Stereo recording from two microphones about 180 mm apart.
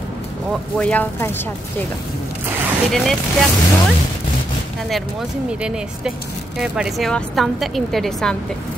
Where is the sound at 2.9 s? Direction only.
Centre (ahead or behind).